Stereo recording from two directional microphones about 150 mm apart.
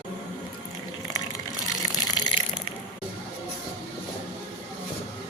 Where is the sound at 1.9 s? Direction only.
25° left (ahead or behind).